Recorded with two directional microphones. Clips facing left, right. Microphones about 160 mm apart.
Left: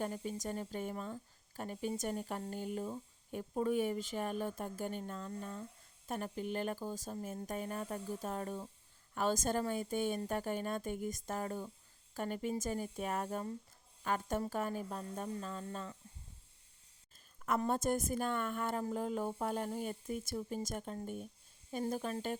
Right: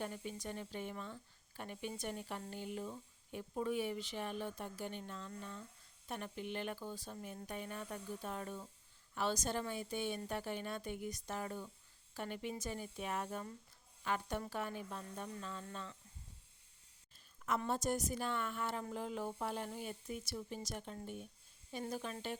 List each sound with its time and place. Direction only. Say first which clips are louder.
0.0 s speech: left 5 dB; 40° left (ahead or behind)
17.4 s speech: left 4 dB; 50° left (ahead or behind)